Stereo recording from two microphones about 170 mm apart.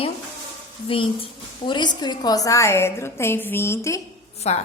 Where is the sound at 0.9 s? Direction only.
30° left (ahead or behind); by 4.0 s 15° left (ahead or behind).